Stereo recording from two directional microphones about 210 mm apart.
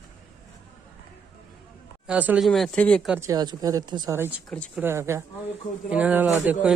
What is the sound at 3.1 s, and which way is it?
Speech, 15° right (ahead or behind).